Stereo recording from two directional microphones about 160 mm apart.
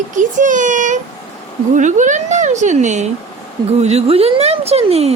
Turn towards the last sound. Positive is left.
turn(degrees=-40)  # may be behind; listen again after turning